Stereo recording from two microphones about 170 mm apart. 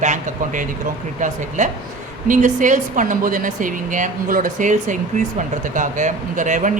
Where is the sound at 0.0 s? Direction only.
50° right (ahead or behind).